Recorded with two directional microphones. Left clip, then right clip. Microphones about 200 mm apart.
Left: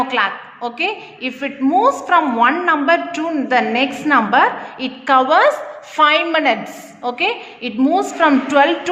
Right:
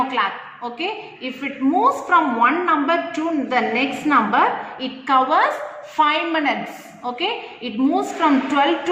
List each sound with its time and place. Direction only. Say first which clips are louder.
0.1 s a woman's voice: left 3 dB; 55° left (ahead or behind)